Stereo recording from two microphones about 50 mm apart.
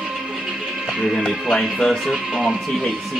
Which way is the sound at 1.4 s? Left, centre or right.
Centre.